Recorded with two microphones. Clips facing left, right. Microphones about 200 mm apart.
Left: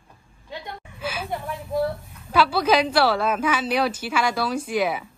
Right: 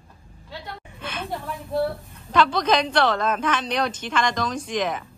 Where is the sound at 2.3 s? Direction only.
10° left (ahead or behind).